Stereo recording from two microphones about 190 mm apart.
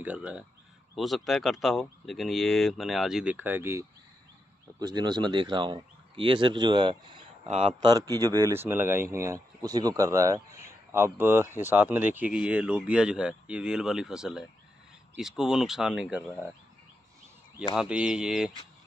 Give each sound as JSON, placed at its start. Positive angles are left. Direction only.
{"t": 0.0, "sound": "speech", "side_deg": -5}
{"t": 4.7, "sound": "speech", "side_deg": -20}
{"t": 17.7, "sound": "speech", "side_deg": -5}